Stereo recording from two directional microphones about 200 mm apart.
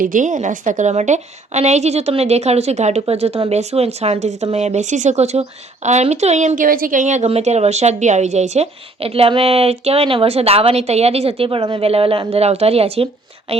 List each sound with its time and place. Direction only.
0.0 s a woman's voice: 40° right (ahead or behind)